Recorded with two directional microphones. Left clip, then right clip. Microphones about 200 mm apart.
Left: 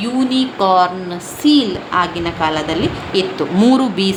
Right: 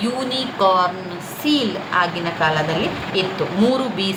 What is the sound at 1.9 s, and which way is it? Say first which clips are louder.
A woman's voice: left 2 dB; 45° left (ahead or behind).